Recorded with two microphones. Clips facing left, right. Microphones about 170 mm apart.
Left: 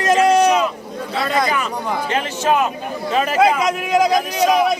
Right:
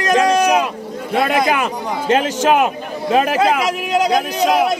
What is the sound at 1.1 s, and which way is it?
A man's voice, 55° right (ahead or behind).